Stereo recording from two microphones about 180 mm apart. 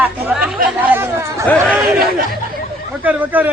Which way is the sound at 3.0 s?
10° right (ahead or behind).